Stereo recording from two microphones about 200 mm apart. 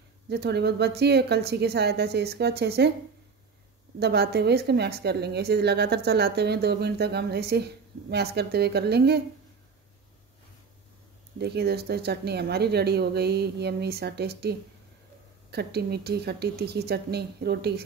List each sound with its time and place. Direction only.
0.3 s a woman's voice: 55° right (ahead or behind)
4.0 s a woman's voice: 55° right (ahead or behind)
11.3 s speech: 55° right (ahead or behind)